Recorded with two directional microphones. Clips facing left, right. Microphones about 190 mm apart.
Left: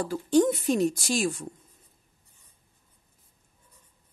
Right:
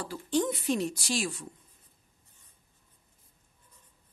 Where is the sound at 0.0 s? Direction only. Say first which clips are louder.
Left 7 dB; 45° left (ahead or behind).